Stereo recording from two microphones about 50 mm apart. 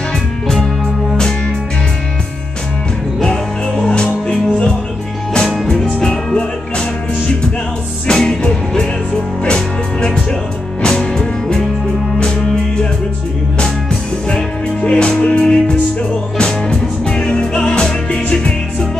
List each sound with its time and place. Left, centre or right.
3.2 s music: centre
8.1 s music: centre
14.3 s music: left
16.3 s music: centre